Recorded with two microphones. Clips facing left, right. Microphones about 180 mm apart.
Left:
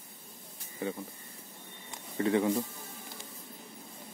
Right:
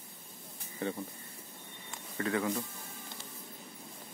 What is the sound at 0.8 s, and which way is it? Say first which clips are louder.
Speech: left 1 dB; 10° left (ahead or behind).